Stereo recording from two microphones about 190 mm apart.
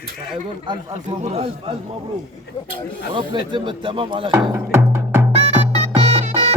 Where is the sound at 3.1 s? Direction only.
25° right (ahead or behind).